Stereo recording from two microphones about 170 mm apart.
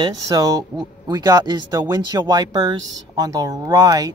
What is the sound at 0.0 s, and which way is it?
Speech, 20° right (ahead or behind).